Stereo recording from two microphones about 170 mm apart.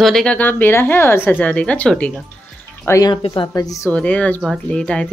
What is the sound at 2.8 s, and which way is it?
Speech, 20° left (ahead or behind).